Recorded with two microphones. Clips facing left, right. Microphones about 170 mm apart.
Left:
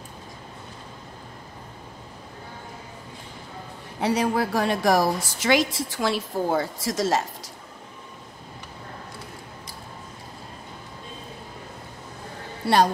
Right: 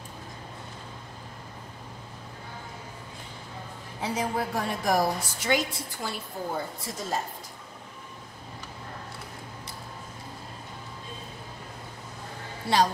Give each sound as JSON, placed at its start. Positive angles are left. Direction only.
{"t": 4.0, "sound": "a woman's voice", "side_deg": 75}
{"t": 12.6, "sound": "a woman's voice", "side_deg": 70}